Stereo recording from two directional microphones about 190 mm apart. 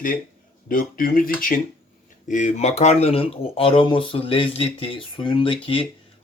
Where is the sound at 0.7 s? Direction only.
45° left (ahead or behind).